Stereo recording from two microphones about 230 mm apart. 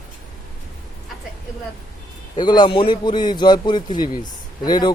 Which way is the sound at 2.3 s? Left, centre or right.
Centre.